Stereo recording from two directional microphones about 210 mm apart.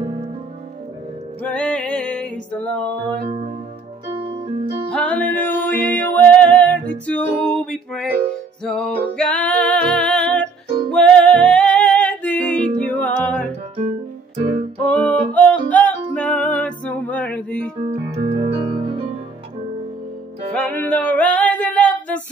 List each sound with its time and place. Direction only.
1.4 s music: 5° left (ahead or behind)
3.3 s music: 30° right (ahead or behind)
4.2 s keyboard: 30° right (ahead or behind)
4.9 s music: 5° left (ahead or behind)
14.8 s music: 5° left (ahead or behind)
18.1 s music: 25° right (ahead or behind)
20.5 s music: 10° left (ahead or behind)